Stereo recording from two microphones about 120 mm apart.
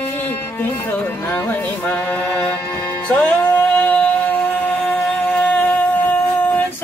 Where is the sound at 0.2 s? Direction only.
15° left (ahead or behind).